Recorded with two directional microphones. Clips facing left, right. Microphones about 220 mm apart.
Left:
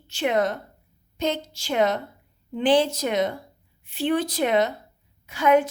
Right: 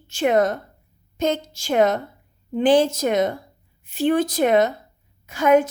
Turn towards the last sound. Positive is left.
turn(degrees=-45)  # may be behind; listen again after turning